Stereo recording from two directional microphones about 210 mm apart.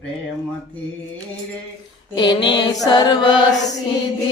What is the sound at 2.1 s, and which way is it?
Carnatic music, 20° left (ahead or behind).